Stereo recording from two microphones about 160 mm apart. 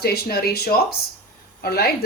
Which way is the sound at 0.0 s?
80° left.